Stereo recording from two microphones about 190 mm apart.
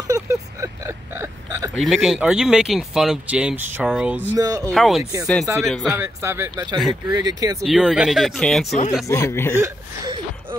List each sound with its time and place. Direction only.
0.1 s hiccup: 15° right (ahead or behind)
1.8 s speech: centre (ahead or behind)
4.4 s speech: 20° right (ahead or behind)
4.7 s speech: centre (ahead or behind)
5.9 s speech: 15° right (ahead or behind)
7.6 s speech: 5° right (ahead or behind)
9.0 s speech: 15° left (ahead or behind)
9.6 s chuckle: 20° right (ahead or behind)